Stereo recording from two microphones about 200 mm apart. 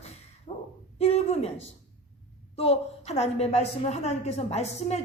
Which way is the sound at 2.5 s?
30° left (ahead or behind).